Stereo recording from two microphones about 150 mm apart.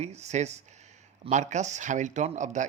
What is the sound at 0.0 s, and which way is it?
Speech, 45° right (ahead or behind).